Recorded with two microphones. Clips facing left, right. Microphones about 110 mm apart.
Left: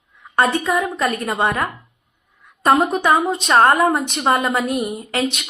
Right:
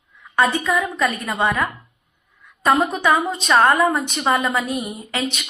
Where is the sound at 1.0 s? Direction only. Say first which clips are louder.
Left 1 dB; 45° left (ahead or behind).